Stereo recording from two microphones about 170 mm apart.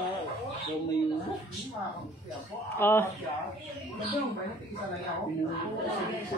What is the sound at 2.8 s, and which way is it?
Speech, 15° left (ahead or behind).